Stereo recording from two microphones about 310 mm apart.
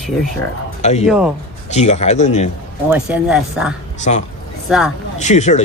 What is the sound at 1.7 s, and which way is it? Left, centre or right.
Speech, left.